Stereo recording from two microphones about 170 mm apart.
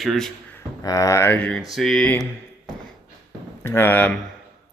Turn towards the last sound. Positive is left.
turn(degrees=10)  # may be behind; listen again after turning